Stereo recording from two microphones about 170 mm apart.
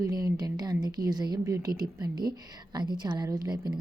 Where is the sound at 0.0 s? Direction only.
20° right (ahead or behind).